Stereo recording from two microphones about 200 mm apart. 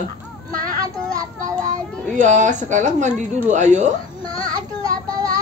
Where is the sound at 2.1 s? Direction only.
40° right (ahead or behind).